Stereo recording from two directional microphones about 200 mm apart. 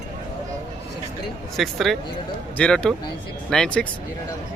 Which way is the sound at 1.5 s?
Centre (ahead or behind).